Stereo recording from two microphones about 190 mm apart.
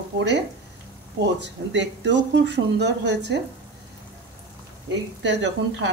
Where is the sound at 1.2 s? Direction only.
65° right (ahead or behind).